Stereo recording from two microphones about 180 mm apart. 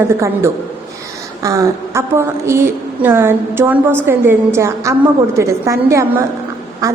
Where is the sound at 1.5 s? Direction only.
15° right (ahead or behind).